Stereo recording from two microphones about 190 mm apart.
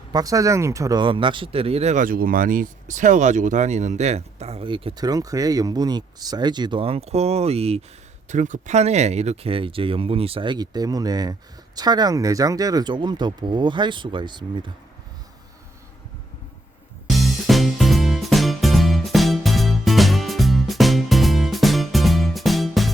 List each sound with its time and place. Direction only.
0.1 s speech: 20° right (ahead or behind)
17.1 s music: centre (ahead or behind)